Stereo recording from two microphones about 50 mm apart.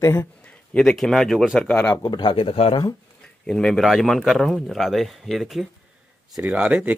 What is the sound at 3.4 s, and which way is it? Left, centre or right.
Speech, centre.